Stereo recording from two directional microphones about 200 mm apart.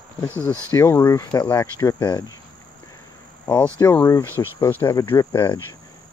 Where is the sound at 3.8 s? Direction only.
10° left (ahead or behind).